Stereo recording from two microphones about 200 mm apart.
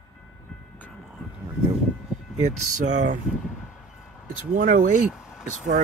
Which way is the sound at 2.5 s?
35° right (ahead or behind).